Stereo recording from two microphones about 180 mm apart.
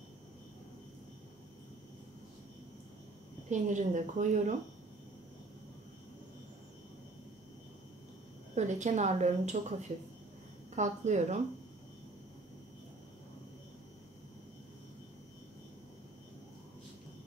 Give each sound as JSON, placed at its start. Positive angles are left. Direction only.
{"t": 3.4, "sound": "a woman's voice", "side_deg": -45}
{"t": 8.5, "sound": "a woman's voice", "side_deg": -40}